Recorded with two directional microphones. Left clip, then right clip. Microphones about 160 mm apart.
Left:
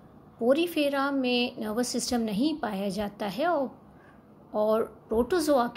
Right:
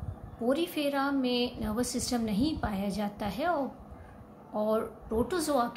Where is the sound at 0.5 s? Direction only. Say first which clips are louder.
Left 5 dB; 45° left (ahead or behind).